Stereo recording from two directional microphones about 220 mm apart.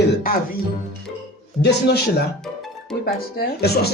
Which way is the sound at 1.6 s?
50° left (ahead or behind).